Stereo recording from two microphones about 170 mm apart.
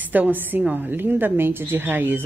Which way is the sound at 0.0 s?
10° right (ahead or behind).